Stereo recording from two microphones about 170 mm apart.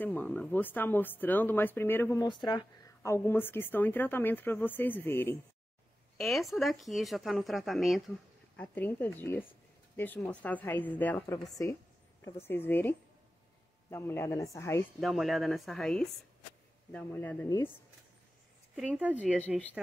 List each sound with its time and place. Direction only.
0.0 s speech: 10° left (ahead or behind)
2.2 s speech: 25° left (ahead or behind)
6.1 s speech: centre (ahead or behind)
8.5 s speech: 10° left (ahead or behind)
15.0 s speech: centre (ahead or behind); by 17.7 s 15° left (ahead or behind)
18.8 s a woman's voice: 10° right (ahead or behind)
19.1 s speech: 10° left (ahead or behind)